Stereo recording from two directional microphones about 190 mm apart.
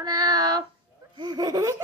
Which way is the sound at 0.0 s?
20° right (ahead or behind).